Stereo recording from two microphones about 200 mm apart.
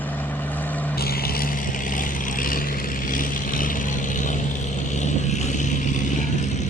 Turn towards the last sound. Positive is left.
turn(degrees=35)  # may be behind; listen again after turning